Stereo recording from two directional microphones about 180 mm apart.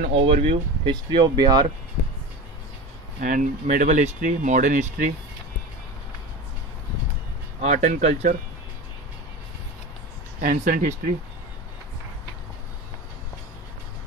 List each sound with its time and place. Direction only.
0.1 s speech: 35° right (ahead or behind)
3.2 s speech: 45° right (ahead or behind)
7.6 s speech: 45° right (ahead or behind)
10.4 s speech: 50° right (ahead or behind)